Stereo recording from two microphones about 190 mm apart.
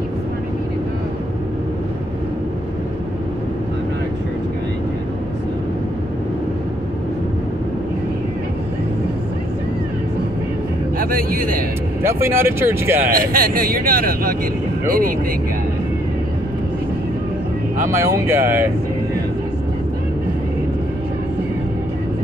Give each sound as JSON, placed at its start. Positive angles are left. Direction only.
{"t": 11.0, "sound": "speech", "side_deg": -50}
{"t": 12.0, "sound": "speech", "side_deg": -15}
{"t": 13.1, "sound": "speech", "side_deg": -50}
{"t": 17.8, "sound": "speech", "side_deg": -15}